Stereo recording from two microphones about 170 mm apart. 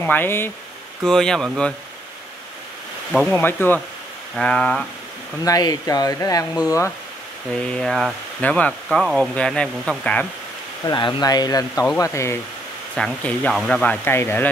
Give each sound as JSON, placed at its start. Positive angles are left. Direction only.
{"t": 0.0, "sound": "speech", "side_deg": 10}
{"t": 3.3, "sound": "speech", "side_deg": 10}
{"t": 5.4, "sound": "speech", "side_deg": 20}
{"t": 7.5, "sound": "speech", "side_deg": 5}
{"t": 8.8, "sound": "speech", "side_deg": -5}
{"t": 10.9, "sound": "speech", "side_deg": 25}
{"t": 12.9, "sound": "speech", "side_deg": 5}